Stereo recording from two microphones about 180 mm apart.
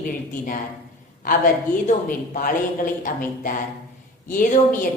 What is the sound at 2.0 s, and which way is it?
Speech, 50° left (ahead or behind).